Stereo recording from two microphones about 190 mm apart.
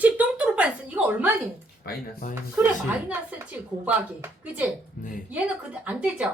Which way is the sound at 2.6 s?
10° right (ahead or behind).